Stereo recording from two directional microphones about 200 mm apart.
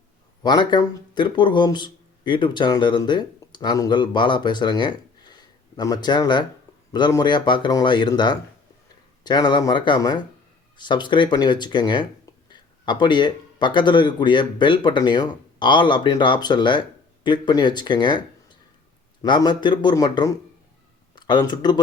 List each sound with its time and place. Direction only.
0.4 s speech: 20° left (ahead or behind)
19.2 s speech: 20° left (ahead or behind)